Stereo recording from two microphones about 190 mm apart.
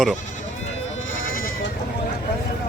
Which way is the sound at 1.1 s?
50° left (ahead or behind).